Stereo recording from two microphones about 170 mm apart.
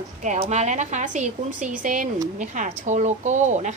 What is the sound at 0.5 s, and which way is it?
Speech, 45° right (ahead or behind).